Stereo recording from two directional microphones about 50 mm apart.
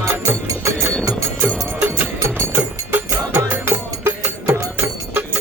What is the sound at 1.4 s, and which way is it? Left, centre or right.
Music, right.